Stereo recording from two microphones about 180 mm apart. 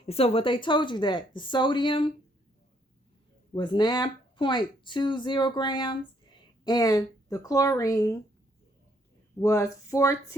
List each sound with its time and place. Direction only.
0.0 s speech: 30° left (ahead or behind)
3.5 s speech: 25° left (ahead or behind)
9.4 s speech: 15° left (ahead or behind)